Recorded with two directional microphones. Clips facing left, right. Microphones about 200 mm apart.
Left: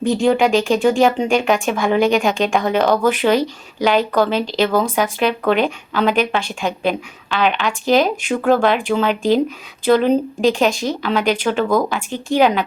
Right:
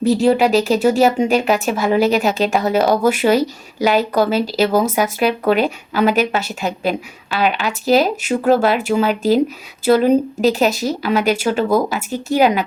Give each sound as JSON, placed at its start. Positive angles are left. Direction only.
{"t": 0.0, "sound": "speech", "side_deg": -5}